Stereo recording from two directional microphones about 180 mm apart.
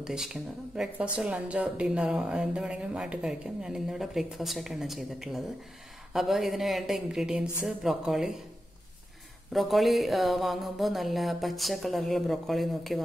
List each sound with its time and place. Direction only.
0.0 s a woman's voice: 5° right (ahead or behind)
9.5 s a woman's voice: centre (ahead or behind)